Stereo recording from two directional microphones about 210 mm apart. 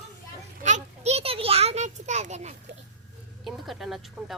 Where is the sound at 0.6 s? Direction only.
35° right (ahead or behind).